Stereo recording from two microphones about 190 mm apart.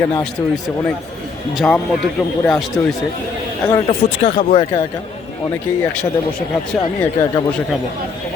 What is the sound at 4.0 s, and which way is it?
Speech, 45° left (ahead or behind).